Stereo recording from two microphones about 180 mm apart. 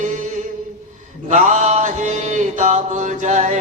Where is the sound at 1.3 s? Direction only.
40° right (ahead or behind).